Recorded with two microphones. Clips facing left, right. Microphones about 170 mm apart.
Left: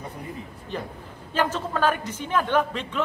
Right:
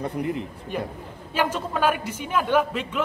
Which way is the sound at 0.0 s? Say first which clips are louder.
Right 9 dB; 70° right (ahead or behind).